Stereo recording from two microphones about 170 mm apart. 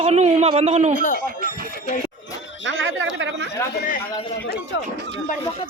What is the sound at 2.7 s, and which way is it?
Speech, 90° right.